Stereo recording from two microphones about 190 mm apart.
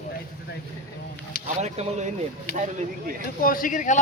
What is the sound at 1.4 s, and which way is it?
Speech, 35° right (ahead or behind).